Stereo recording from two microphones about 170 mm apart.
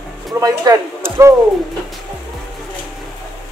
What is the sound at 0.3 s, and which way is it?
Speech, 15° right (ahead or behind).